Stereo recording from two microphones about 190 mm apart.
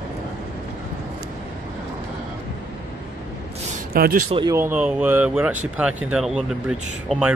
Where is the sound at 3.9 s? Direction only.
50° right (ahead or behind).